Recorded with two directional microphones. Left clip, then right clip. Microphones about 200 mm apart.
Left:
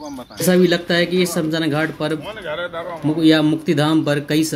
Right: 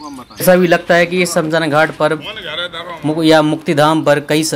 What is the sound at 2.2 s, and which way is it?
Speech, 25° left (ahead or behind).